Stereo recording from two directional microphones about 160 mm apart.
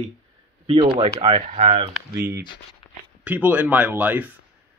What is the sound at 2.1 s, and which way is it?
Speech, 20° right (ahead or behind).